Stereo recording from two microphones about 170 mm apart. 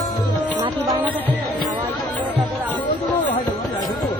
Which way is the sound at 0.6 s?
20° right (ahead or behind).